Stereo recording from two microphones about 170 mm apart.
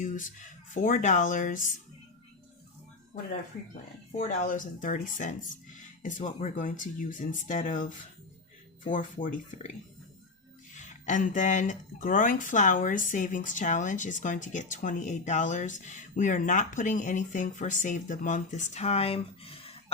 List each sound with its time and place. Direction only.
0.0 s speech: 50° left (ahead or behind)
4.1 s speech: 45° left (ahead or behind)
10.8 s speech: 45° left (ahead or behind)